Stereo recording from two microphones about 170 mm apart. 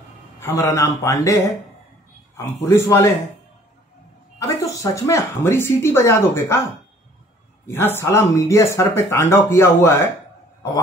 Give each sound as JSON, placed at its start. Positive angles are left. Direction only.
{"t": 0.4, "sound": "a man's voice", "side_deg": 20}
{"t": 4.4, "sound": "speech", "side_deg": 20}